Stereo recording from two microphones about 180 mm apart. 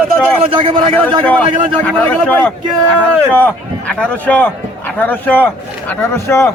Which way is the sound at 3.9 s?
10° left (ahead or behind).